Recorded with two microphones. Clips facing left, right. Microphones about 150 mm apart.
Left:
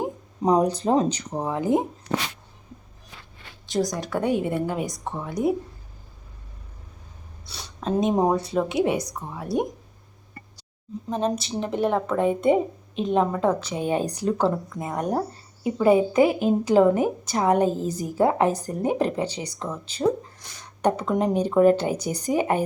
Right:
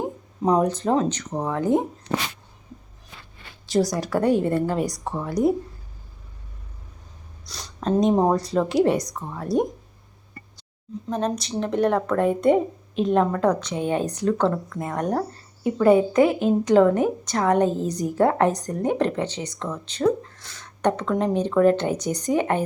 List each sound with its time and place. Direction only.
0.4 s a woman's voice: 15° left (ahead or behind)
3.7 s a woman's voice: 5° right (ahead or behind)
7.4 s a woman's voice: 5° left (ahead or behind)
11.3 s a woman's voice: 5° left (ahead or behind)